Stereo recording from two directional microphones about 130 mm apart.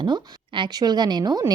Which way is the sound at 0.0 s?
35° right (ahead or behind).